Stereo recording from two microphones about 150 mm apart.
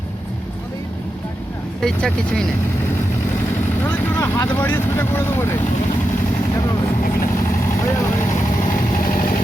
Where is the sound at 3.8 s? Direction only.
10° left (ahead or behind).